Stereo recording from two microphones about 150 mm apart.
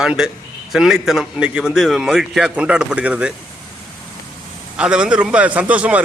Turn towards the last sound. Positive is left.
turn(degrees=-10)  # may be behind; listen again after turning